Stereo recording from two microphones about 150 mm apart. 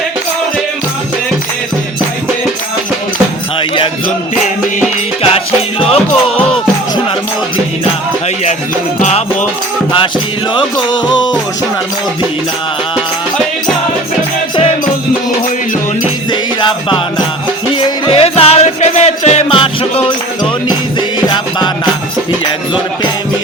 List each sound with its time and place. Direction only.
5.8 s music: 40° left (ahead or behind)
9.0 s music: 50° left (ahead or behind)
16.3 s music: 30° left (ahead or behind)